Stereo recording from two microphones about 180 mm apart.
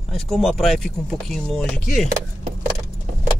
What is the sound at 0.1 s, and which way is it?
Speech, centre (ahead or behind).